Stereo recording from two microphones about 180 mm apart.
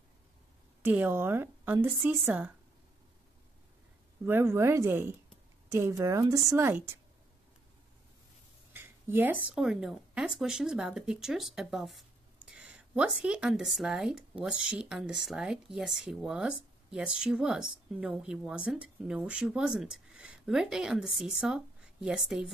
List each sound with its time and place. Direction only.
0.8 s a woman's voice: 10° right (ahead or behind)
4.2 s a woman's voice: 10° right (ahead or behind)
8.7 s speech: 10° right (ahead or behind)